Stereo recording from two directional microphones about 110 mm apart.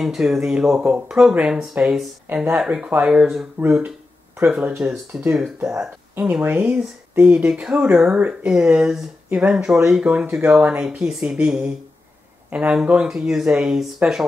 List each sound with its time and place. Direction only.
0.0 s speech: 5° right (ahead or behind)
2.2 s speech: 15° right (ahead or behind)